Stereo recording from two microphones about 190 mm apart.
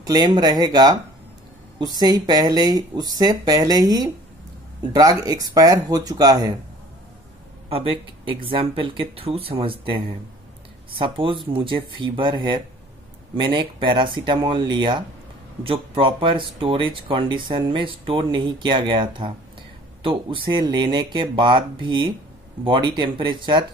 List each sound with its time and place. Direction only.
0.0 s speech: 20° right (ahead or behind)
5.2 s speech: 20° right (ahead or behind)
7.7 s speech: 30° right (ahead or behind)